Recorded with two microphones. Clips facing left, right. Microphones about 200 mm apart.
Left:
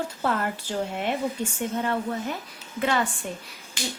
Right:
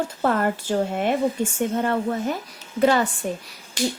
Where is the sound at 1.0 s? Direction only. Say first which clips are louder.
Right 5 dB; 45° right (ahead or behind).